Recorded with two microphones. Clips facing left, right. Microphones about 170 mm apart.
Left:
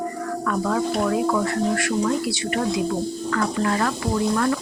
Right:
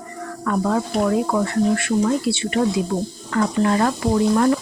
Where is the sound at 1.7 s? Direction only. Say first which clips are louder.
Right 3 dB; 25° right (ahead or behind).